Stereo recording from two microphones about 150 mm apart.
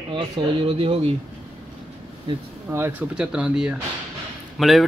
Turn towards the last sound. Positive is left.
turn(degrees=0)  # may be behind; listen again after turning